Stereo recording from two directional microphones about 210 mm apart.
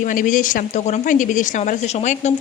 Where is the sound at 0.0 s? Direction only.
40° left (ahead or behind).